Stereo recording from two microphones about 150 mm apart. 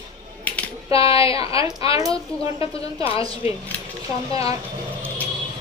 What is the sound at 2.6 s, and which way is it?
Speech, 40° left (ahead or behind).